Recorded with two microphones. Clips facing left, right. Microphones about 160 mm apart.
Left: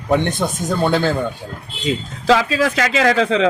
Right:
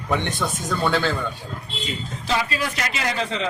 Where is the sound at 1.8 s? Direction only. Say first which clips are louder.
Left 12 dB; 90° left.